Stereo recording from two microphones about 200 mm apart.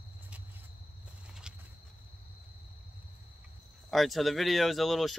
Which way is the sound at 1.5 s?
5° right (ahead or behind).